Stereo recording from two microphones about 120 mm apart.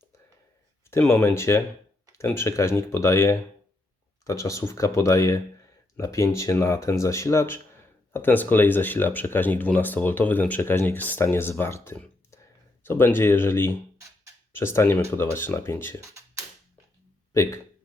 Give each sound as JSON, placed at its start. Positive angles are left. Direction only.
{"t": 0.9, "sound": "speech", "side_deg": 20}
{"t": 17.3, "sound": "speech", "side_deg": 25}